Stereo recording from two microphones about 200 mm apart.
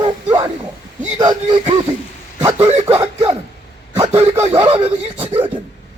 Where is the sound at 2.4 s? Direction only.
10° right (ahead or behind).